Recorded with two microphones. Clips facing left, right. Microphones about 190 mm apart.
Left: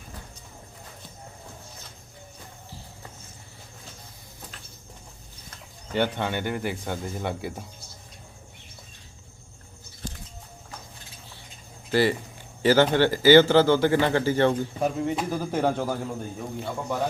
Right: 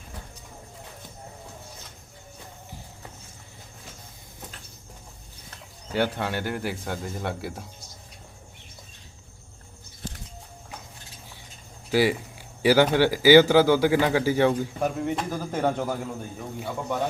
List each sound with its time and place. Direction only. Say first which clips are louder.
5.9 s speech: even; 5° right (ahead or behind)
11.9 s speech: even; 10° right (ahead or behind)
16.6 s speech: right 1 dB; 10° right (ahead or behind)